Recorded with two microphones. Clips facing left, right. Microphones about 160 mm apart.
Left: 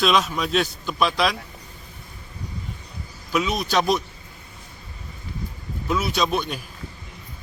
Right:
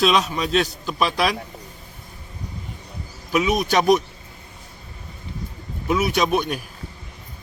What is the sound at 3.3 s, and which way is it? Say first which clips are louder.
Speech: right 3 dB; 15° right (ahead or behind).